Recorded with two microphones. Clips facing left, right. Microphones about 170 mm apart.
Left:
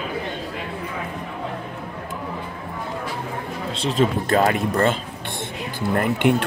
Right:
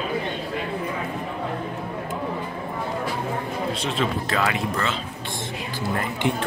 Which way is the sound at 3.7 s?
30° left (ahead or behind).